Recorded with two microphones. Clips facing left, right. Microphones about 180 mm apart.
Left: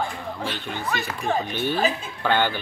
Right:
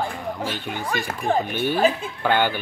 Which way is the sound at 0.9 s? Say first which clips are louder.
Right 3 dB; 50° right (ahead or behind).